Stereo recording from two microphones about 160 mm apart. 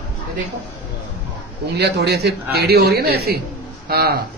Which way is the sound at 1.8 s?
90° right.